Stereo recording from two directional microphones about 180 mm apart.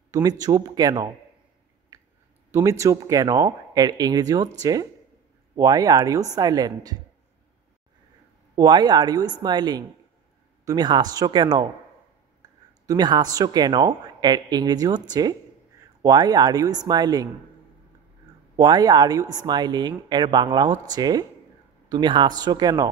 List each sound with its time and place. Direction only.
0.1 s speech: 20° right (ahead or behind)
2.5 s speech: 15° right (ahead or behind)
8.5 s speech: 25° right (ahead or behind)
18.6 s speech: 20° right (ahead or behind)